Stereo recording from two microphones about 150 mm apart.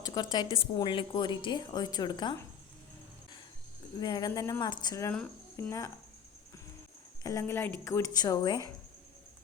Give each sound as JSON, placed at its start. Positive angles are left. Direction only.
{"t": 0.0, "sound": "a woman's voice", "side_deg": 25}
{"t": 4.0, "sound": "a woman's voice", "side_deg": 25}
{"t": 7.2, "sound": "a woman's voice", "side_deg": 20}